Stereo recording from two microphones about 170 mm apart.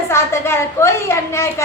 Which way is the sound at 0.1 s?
15° left (ahead or behind).